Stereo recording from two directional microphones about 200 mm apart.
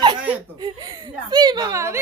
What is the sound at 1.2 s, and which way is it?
Speech, 20° right (ahead or behind).